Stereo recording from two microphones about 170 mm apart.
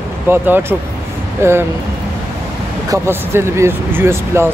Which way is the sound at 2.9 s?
15° right (ahead or behind).